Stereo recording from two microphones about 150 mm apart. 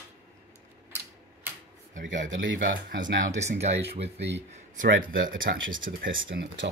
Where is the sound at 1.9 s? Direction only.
60° right (ahead or behind).